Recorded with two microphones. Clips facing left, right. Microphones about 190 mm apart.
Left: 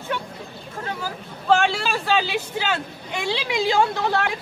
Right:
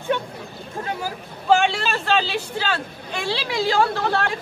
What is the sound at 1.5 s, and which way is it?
Speech, 5° left (ahead or behind).